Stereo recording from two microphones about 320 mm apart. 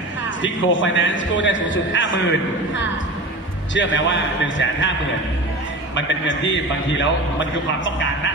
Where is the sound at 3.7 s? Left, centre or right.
Left.